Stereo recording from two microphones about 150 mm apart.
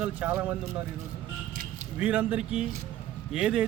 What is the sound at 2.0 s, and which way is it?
Speech, 10° right (ahead or behind).